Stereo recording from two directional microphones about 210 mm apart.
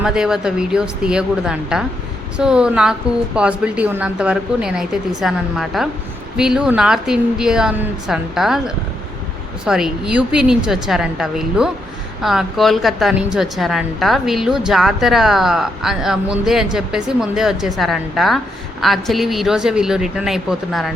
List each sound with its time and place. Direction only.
0.0 s a woman's voice: 5° right (ahead or behind)